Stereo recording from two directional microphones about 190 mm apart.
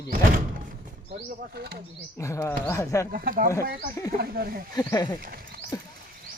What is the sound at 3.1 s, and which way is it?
Speech, 50° right (ahead or behind).